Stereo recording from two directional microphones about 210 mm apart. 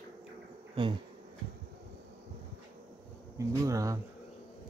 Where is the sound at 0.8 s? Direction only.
20° right (ahead or behind).